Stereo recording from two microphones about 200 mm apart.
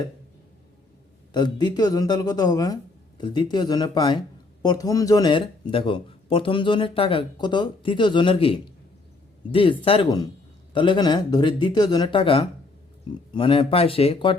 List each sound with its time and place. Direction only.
1.3 s speech: 20° left (ahead or behind)